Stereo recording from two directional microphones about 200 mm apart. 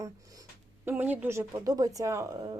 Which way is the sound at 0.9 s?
10° right (ahead or behind).